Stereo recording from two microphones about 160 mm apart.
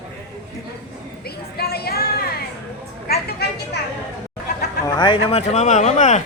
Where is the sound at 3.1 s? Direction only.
85° left.